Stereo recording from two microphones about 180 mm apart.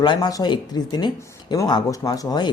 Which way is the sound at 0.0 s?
25° left (ahead or behind).